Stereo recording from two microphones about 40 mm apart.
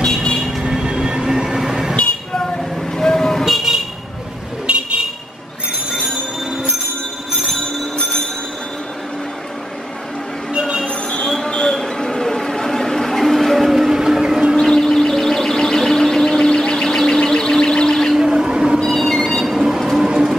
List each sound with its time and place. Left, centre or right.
0.0 s vehicle: centre
0.6 s train: centre
3.0 s vehicle: centre
3.4 s vehicle: centre
4.7 s vehicle: right
11.5 s a sound: centre
11.8 s music: centre
14.6 s alarm: centre
18.1 s a sound: centre
18.8 s train: centre
19.4 s train: centre